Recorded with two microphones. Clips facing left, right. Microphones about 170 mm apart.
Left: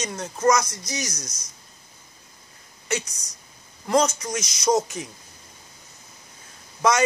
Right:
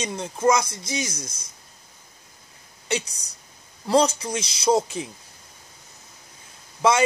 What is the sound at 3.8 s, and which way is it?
A man's voice, 30° right (ahead or behind).